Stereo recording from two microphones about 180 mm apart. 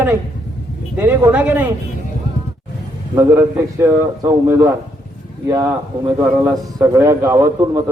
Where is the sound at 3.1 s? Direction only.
15° right (ahead or behind).